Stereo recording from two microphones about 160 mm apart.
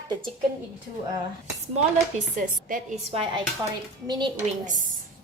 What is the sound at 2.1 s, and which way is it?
A woman's voice, 45° right (ahead or behind).